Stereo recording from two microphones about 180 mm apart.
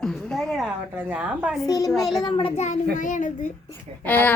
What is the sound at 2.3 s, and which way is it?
A man's voice, 30° left (ahead or behind).